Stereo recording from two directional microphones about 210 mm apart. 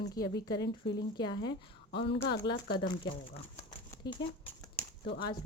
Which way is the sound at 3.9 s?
10° left (ahead or behind).